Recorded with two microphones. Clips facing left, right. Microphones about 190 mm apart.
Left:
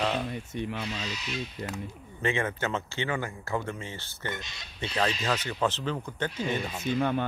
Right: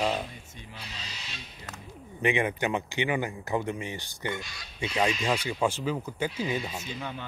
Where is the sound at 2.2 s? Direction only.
15° right (ahead or behind).